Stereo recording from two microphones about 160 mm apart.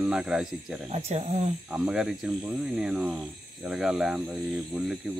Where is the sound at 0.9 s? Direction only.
40° right (ahead or behind).